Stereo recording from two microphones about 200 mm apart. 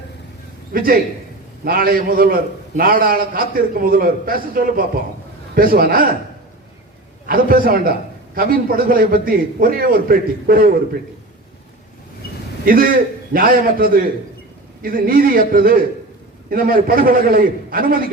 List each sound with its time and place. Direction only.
0.7 s a man's voice: 45° right (ahead or behind)
7.3 s a man's voice: 45° right (ahead or behind)
12.6 s a man's voice: 45° right (ahead or behind)